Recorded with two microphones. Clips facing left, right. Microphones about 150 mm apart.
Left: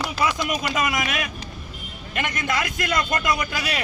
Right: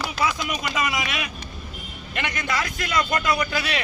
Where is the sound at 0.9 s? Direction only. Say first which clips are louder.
Left 2 dB; 45° left (ahead or behind).